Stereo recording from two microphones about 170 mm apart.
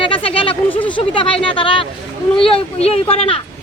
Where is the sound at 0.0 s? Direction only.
30° left (ahead or behind).